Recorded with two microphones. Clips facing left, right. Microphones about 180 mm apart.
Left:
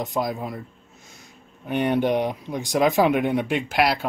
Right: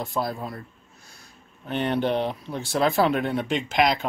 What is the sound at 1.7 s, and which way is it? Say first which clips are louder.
Speech: left 3 dB; 15° left (ahead or behind).